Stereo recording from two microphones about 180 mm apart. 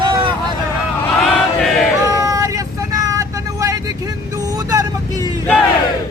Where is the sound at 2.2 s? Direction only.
20° right (ahead or behind).